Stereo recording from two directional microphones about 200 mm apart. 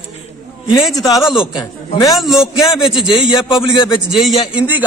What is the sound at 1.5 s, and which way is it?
Speech, 20° left (ahead or behind).